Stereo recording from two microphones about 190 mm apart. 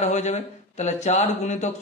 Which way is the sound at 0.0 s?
35° left (ahead or behind).